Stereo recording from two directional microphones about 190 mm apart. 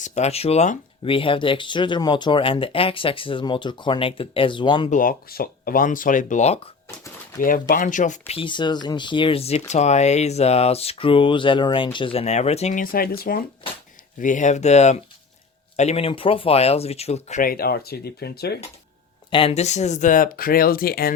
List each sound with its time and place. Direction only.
0.0 s speech: 40° left (ahead or behind)
4.9 s speech: 45° left (ahead or behind)
7.3 s speech: 45° left (ahead or behind)
8.3 s speech: 25° left (ahead or behind); by 18.6 s 55° left (ahead or behind)
19.3 s speech: 30° left (ahead or behind); by 21.1 s 50° left (ahead or behind)